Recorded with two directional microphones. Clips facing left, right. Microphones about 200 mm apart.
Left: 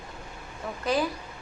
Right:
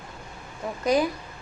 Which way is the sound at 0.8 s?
15° right (ahead or behind).